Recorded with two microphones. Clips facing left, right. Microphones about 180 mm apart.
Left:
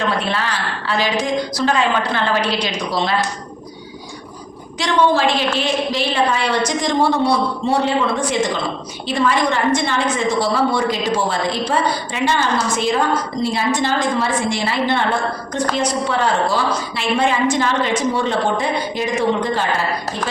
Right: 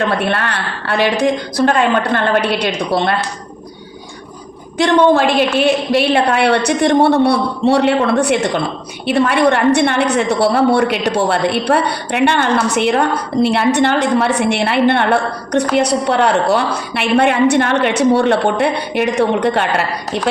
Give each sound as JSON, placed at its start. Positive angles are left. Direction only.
{"t": 0.2, "sound": "a woman's voice", "side_deg": -60}
{"t": 4.8, "sound": "a woman's voice", "side_deg": -55}